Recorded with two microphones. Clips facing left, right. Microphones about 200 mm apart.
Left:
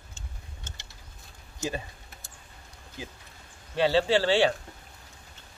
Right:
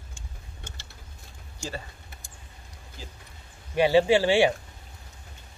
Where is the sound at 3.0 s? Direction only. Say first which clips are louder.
Left 5 dB; 15° left (ahead or behind).